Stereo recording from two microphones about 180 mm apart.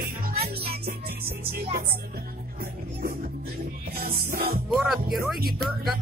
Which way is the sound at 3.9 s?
55° right (ahead or behind).